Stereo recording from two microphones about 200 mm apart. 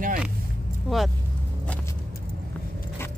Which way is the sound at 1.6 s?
5° left (ahead or behind).